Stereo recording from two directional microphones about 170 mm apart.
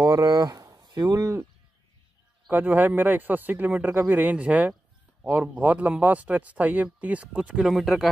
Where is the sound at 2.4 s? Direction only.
10° right (ahead or behind).